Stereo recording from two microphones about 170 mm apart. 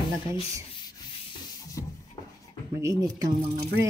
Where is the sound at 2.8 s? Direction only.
20° right (ahead or behind).